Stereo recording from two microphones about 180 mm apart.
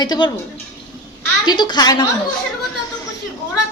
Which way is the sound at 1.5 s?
25° left (ahead or behind).